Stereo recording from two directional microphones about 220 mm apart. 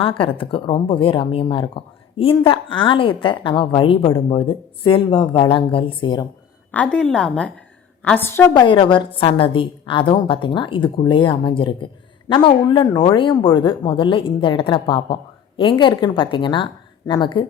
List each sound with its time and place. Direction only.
0.0 s a woman's voice: 25° left (ahead or behind)
6.7 s a woman's voice: 5° left (ahead or behind)
8.6 s a woman's voice: 20° left (ahead or behind)